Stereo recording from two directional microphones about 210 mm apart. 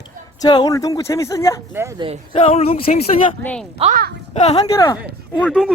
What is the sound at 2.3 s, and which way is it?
Speech, 30° left (ahead or behind).